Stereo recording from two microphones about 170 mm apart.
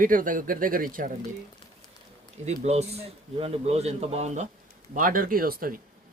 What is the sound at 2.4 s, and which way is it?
Speech, 40° right (ahead or behind).